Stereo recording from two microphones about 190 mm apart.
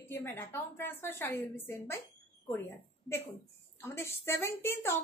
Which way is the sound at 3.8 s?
15° left (ahead or behind).